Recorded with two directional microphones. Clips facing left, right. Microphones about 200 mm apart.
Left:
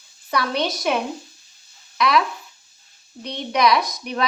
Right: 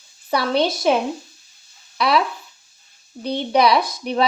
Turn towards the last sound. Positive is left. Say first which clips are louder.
# right 2 dB
turn(degrees=-30)  # may be behind; listen again after turning